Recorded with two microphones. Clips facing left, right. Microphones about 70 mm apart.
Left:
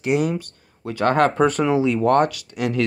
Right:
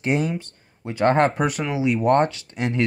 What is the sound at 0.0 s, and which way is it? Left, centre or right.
Speech, right.